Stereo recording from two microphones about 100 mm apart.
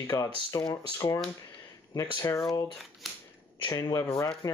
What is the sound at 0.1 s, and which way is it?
Speech, 30° left (ahead or behind).